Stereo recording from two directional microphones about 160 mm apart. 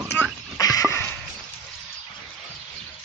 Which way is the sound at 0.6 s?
20° left (ahead or behind).